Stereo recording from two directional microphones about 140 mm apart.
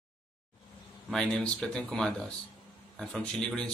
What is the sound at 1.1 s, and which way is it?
Speech, 5° left (ahead or behind).